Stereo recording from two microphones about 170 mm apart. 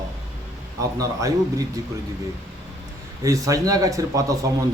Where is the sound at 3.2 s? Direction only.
20° right (ahead or behind).